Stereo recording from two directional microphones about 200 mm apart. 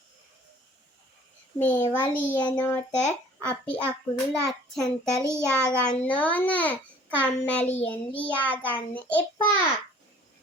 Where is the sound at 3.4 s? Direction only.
5° left (ahead or behind).